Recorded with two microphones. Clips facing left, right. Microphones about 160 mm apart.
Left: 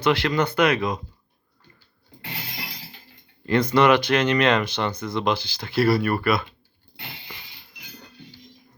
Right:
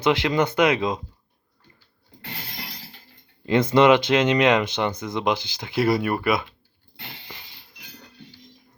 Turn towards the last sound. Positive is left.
turn(degrees=5)  # may be behind; listen again after turning